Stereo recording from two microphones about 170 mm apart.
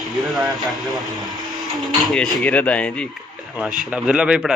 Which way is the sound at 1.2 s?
25° right (ahead or behind).